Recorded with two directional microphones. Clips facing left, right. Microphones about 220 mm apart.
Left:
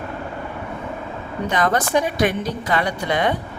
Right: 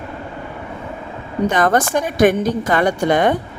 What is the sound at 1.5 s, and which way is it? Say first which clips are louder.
A woman's voice: right 4 dB; 50° right (ahead or behind).